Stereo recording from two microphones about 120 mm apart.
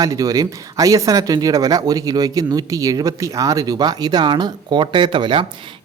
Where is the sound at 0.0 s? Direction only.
30° right (ahead or behind).